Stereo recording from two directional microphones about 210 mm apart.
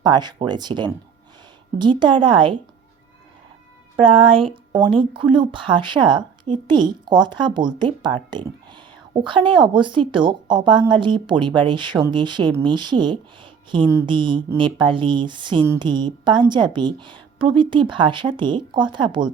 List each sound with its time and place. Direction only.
0.0 s speech: 20° right (ahead or behind)
4.0 s speech: 25° right (ahead or behind)